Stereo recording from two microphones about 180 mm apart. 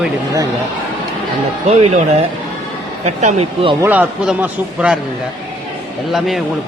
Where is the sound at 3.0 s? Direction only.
40° right (ahead or behind).